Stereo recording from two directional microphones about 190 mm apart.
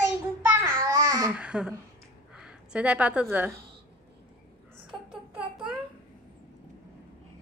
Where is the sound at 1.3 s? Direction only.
5° right (ahead or behind).